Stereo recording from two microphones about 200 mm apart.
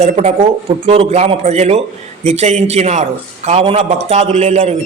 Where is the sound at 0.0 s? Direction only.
35° right (ahead or behind).